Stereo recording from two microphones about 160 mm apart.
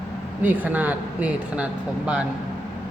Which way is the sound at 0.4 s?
10° right (ahead or behind).